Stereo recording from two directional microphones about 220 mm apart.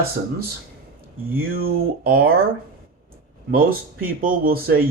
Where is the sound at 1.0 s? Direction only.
40° right (ahead or behind).